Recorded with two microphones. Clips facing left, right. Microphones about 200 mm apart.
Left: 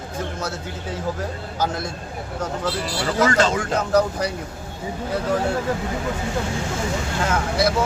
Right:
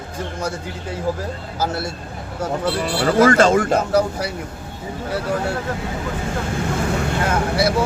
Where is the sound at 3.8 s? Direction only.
10° right (ahead or behind).